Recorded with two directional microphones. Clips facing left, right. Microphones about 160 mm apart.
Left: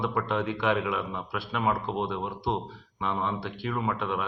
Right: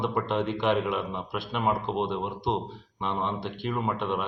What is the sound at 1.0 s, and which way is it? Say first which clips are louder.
A man's voice: right 1 dB; 20° right (ahead or behind).